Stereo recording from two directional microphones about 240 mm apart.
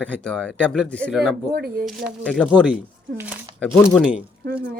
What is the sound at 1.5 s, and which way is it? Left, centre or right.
Speech, right.